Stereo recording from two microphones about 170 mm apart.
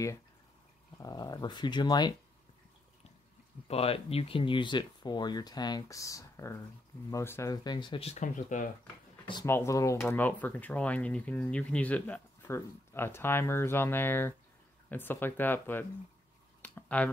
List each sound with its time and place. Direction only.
0.9 s speech: 20° left (ahead or behind)
3.6 s speech: 35° left (ahead or behind)
9.5 s speech: 15° left (ahead or behind)
16.6 s a sound: 10° left (ahead or behind)